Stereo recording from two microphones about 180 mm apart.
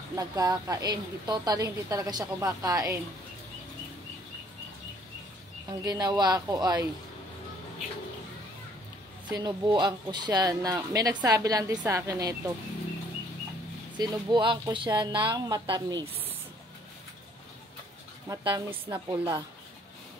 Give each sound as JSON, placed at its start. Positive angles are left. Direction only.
{"t": 0.1, "sound": "a woman's voice", "side_deg": -20}
{"t": 5.7, "sound": "a woman's voice", "side_deg": -20}
{"t": 9.3, "sound": "a woman's voice", "side_deg": -20}
{"t": 13.9, "sound": "a woman's voice", "side_deg": -25}
{"t": 18.3, "sound": "a woman's voice", "side_deg": -20}